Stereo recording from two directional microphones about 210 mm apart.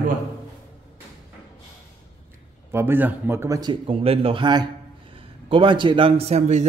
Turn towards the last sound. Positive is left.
turn(degrees=-30)  # may be behind; listen again after turning